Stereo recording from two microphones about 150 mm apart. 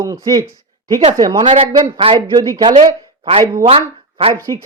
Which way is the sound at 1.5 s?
40° right (ahead or behind).